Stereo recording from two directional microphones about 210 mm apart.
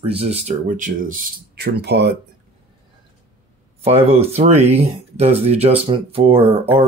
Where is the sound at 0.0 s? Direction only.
30° right (ahead or behind); by 2.1 s 50° right (ahead or behind).